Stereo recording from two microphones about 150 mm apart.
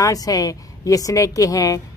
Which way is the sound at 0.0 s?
25° left (ahead or behind).